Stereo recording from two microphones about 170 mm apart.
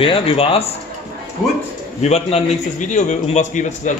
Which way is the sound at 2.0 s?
40° left (ahead or behind).